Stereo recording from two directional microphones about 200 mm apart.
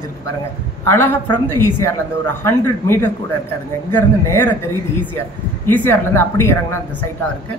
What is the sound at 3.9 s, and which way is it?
Speech, 10° left (ahead or behind).